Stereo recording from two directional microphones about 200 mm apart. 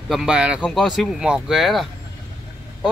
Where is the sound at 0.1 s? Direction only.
5° right (ahead or behind).